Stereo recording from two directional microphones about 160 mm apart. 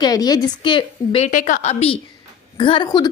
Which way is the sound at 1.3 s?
55° left (ahead or behind).